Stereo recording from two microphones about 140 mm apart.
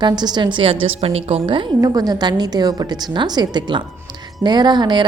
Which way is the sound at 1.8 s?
30° right (ahead or behind).